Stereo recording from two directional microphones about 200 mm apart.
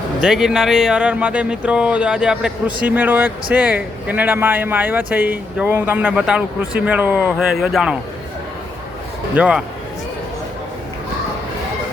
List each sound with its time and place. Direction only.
0.2 s speech: centre (ahead or behind)
9.3 s speech: 5° right (ahead or behind)